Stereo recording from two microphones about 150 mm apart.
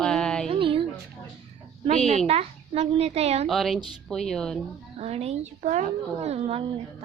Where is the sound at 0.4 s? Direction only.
40° right (ahead or behind).